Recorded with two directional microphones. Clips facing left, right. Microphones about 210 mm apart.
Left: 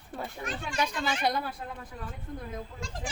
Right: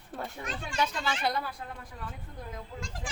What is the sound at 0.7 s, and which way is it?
Speech, 15° left (ahead or behind).